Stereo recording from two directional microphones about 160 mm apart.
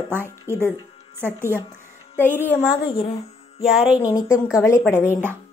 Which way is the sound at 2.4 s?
15° left (ahead or behind).